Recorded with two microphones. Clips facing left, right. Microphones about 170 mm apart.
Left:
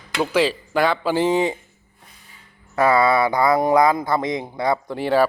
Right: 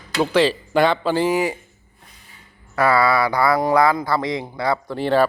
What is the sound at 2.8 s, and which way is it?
A man's voice, 20° left (ahead or behind).